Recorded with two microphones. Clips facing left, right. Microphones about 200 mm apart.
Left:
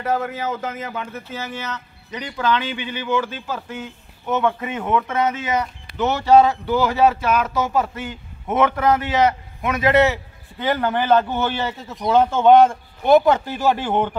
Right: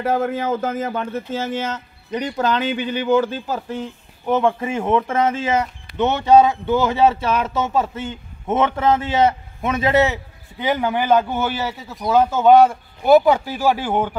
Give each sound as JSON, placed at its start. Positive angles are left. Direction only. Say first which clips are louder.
{"t": 0.0, "sound": "a man's voice", "louder": "right 3 dB", "side_deg": -50}
{"t": 10.6, "sound": "a man's voice", "louder": "right 1 dB", "side_deg": -10}